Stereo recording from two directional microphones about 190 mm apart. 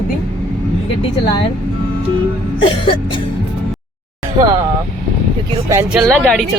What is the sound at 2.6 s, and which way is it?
Music, 25° left (ahead or behind).